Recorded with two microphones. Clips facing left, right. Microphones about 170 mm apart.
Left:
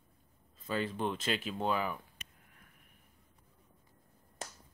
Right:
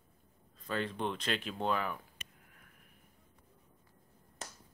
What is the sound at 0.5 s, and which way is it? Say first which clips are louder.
Speech: left 1 dB; 5° left (ahead or behind).